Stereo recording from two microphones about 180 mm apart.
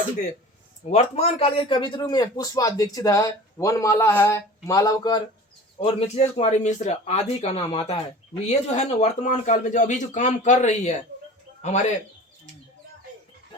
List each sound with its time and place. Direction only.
0.9 s speech: 40° left (ahead or behind); by 5.2 s 20° left (ahead or behind)
5.8 s a man's voice: 35° left (ahead or behind)